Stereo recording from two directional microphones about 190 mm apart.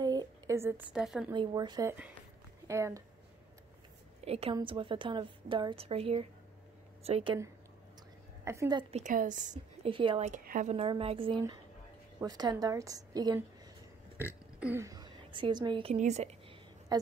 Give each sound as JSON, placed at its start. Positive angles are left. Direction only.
{"t": 0.0, "sound": "a sound", "side_deg": -20}
{"t": 1.3, "sound": "a woman's voice", "side_deg": -25}
{"t": 4.2, "sound": "a woman's voice", "side_deg": -30}
{"t": 8.5, "sound": "a woman's voice", "side_deg": -20}
{"t": 8.9, "sound": "a woman's voice", "side_deg": -45}
{"t": 9.8, "sound": "a woman's voice", "side_deg": -25}
{"t": 16.9, "sound": "a woman's voice", "side_deg": -20}